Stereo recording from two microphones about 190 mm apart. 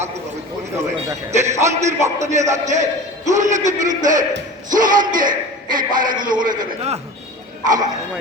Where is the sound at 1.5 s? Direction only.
15° right (ahead or behind).